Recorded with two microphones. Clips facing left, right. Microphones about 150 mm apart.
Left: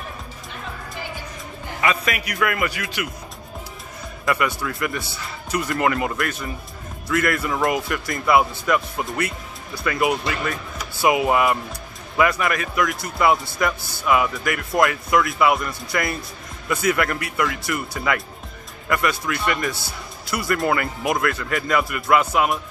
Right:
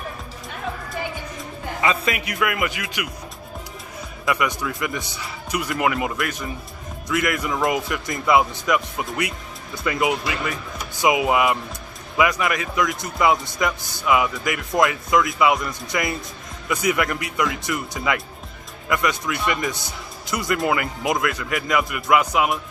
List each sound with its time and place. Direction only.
1.8 s speech: 20° right (ahead or behind)
4.3 s speech: 15° right (ahead or behind)